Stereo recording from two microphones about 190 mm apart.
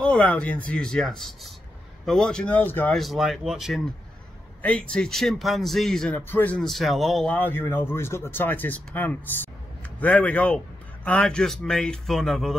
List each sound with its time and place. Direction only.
0.0 s speech: 5° left (ahead or behind)